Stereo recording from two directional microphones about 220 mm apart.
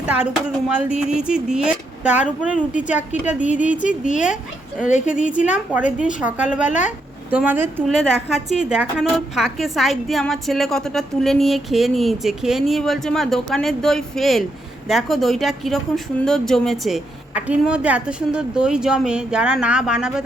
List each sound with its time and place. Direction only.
0.8 s a woman's voice: 5° right (ahead or behind)
3.4 s speech: 35° left (ahead or behind)
5.7 s a woman's voice: 5° right (ahead or behind)